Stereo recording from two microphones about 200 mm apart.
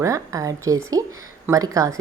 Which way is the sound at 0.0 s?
15° right (ahead or behind).